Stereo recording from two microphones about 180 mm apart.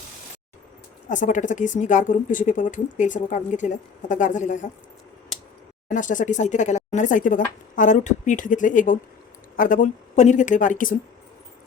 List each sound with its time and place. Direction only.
1.1 s speech: 45° left (ahead or behind)
5.9 s speech: 45° left (ahead or behind)